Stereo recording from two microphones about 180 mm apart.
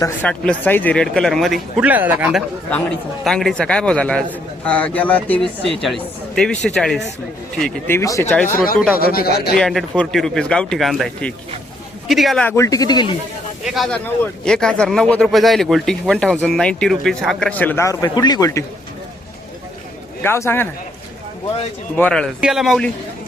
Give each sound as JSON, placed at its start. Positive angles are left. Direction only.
{"t": 0.0, "sound": "speech", "side_deg": 10}
{"t": 2.6, "sound": "a man's voice", "side_deg": 5}
{"t": 7.9, "sound": "a man's voice", "side_deg": 15}
{"t": 8.5, "sound": "a man's voice", "side_deg": 50}
{"t": 9.6, "sound": "speech", "side_deg": 5}
{"t": 12.5, "sound": "speech", "side_deg": 15}
{"t": 13.7, "sound": "speech", "side_deg": 0}
{"t": 20.2, "sound": "a man's voice", "side_deg": 15}
{"t": 21.9, "sound": "speech", "side_deg": 5}